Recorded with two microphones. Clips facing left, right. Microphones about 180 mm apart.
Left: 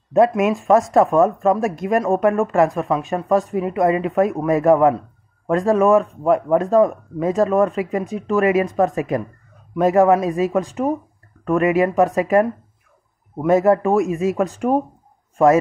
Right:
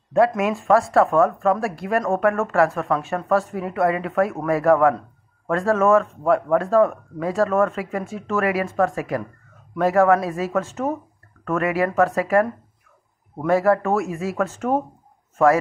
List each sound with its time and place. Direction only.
0.4 s speech: 20° left (ahead or behind)
13.5 s a man's voice: 20° left (ahead or behind)